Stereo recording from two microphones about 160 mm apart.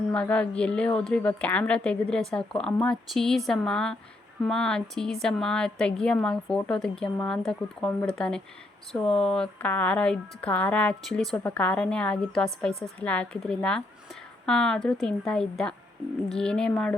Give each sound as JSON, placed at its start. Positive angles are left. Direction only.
{"t": 0.1, "sound": "a woman's voice", "side_deg": 5}